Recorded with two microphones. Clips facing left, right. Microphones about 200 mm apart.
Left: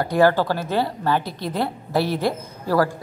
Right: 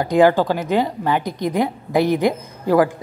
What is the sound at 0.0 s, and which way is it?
A woman's voice, 15° right (ahead or behind).